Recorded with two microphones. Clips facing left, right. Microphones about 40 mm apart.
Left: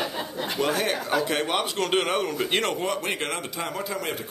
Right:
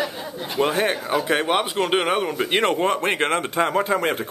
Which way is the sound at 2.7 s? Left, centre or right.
Right.